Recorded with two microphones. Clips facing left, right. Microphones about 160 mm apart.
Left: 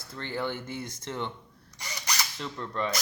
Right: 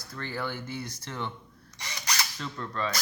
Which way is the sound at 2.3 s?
20° left (ahead or behind).